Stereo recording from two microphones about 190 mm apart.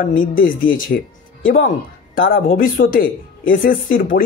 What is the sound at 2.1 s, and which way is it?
Speech, 45° left (ahead or behind).